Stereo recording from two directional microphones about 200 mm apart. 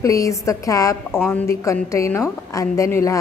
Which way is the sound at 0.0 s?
15° left (ahead or behind).